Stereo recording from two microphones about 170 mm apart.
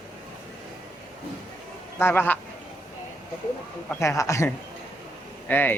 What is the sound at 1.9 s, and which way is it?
Speech, 15° left (ahead or behind).